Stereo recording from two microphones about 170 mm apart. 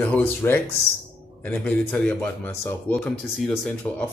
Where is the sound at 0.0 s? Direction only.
10° left (ahead or behind).